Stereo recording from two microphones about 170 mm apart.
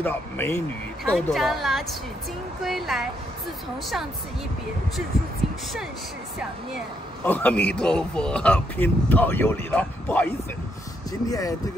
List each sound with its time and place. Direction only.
0.0 s speech: 15° left (ahead or behind)
1.1 s a woman's voice: centre (ahead or behind)
7.2 s speech: 10° left (ahead or behind)
11.1 s speech: 20° left (ahead or behind)